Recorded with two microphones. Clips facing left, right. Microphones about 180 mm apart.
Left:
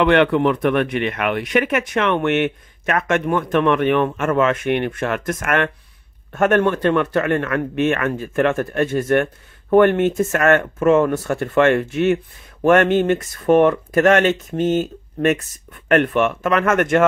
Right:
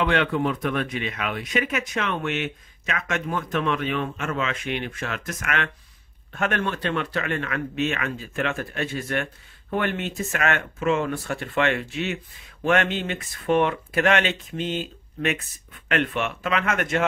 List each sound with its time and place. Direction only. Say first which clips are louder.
0.0 s speech: left 8 dB; 65° left (ahead or behind)